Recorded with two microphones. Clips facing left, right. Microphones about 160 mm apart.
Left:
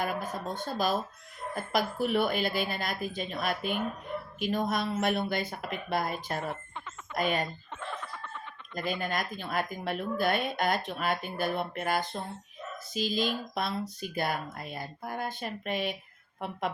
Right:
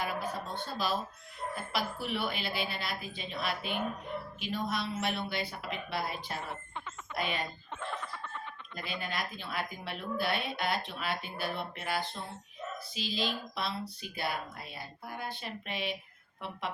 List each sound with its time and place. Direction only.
0.0 s a woman's voice: 45° left (ahead or behind)
7.8 s a sound: centre (ahead or behind)
8.7 s a woman's voice: 45° left (ahead or behind)